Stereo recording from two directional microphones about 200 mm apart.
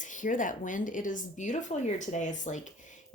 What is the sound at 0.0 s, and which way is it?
Speech, 40° left (ahead or behind).